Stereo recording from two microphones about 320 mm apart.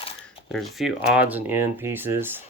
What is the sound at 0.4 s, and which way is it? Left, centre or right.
Speech, centre.